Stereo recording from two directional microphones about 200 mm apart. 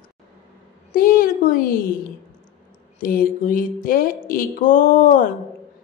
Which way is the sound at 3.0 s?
45° left (ahead or behind).